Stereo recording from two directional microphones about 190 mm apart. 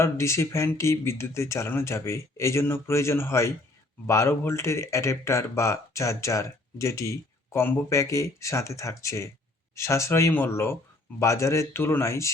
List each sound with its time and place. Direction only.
0.0 s speech: 15° left (ahead or behind)